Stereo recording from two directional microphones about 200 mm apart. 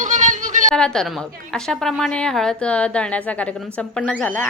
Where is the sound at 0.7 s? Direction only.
5° left (ahead or behind).